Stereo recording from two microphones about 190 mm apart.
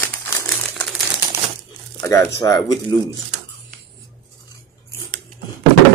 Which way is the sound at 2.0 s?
15° left (ahead or behind).